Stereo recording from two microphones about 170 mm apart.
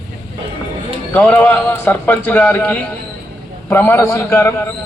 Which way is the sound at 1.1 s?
10° left (ahead or behind).